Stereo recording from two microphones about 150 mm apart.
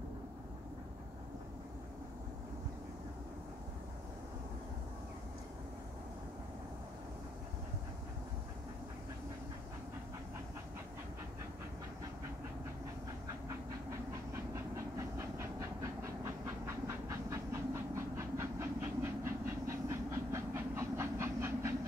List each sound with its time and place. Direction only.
15.1 s train: 20° right (ahead or behind)